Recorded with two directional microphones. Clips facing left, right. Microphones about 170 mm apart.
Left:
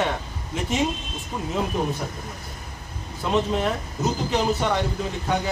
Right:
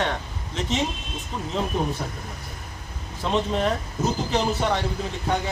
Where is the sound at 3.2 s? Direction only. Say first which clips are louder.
Left 1 dB; 5° left (ahead or behind).